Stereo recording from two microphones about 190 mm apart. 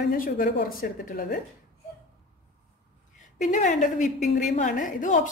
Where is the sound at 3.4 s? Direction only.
40° left (ahead or behind).